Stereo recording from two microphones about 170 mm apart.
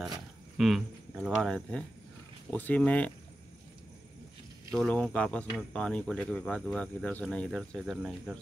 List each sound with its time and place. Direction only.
0.6 s speech: centre (ahead or behind)
4.7 s speech: 5° left (ahead or behind)